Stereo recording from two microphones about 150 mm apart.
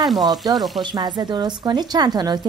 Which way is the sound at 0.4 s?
25° right (ahead or behind).